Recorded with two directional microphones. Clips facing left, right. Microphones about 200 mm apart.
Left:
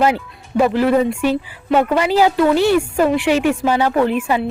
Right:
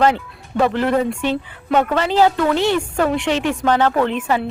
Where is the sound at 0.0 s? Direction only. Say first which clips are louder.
Even; 10° left (ahead or behind).